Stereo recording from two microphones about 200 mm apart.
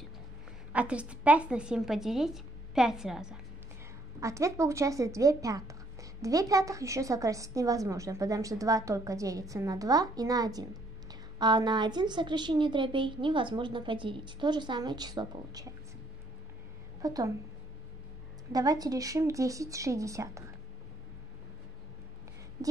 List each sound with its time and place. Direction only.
0.7 s a woman's voice: 5° right (ahead or behind)
4.2 s a woman's voice: 15° right (ahead or behind)
17.0 s a woman's voice: 20° right (ahead or behind)
18.5 s a woman's voice: 20° right (ahead or behind)